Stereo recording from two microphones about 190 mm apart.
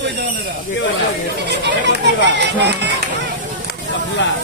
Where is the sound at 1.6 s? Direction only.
65° right (ahead or behind).